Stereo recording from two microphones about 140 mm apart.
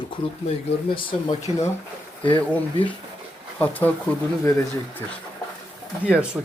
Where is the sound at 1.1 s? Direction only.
50° left (ahead or behind).